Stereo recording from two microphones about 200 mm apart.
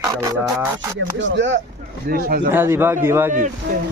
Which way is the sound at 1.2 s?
65° right (ahead or behind).